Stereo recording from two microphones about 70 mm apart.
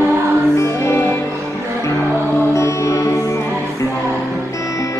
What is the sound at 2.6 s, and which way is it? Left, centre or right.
Music, left.